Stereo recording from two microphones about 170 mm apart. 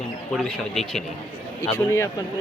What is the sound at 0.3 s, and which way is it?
Speech, centre (ahead or behind).